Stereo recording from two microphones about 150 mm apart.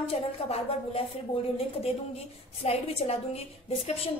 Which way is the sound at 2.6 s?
45° left (ahead or behind).